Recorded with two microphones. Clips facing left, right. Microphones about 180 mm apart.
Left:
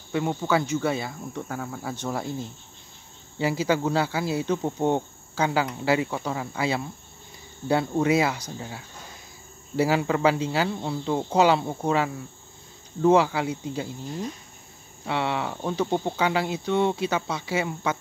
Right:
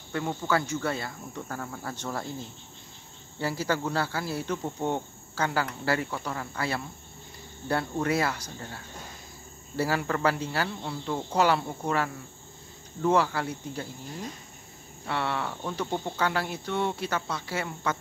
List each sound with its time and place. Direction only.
0.1 s speech: 15° left (ahead or behind)
3.3 s speech: 15° left (ahead or behind)
15.0 s speech: 15° left (ahead or behind)